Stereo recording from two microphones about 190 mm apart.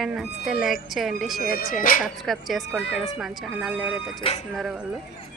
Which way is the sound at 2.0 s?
Centre (ahead or behind).